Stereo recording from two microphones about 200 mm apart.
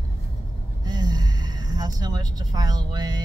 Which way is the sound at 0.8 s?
20° right (ahead or behind).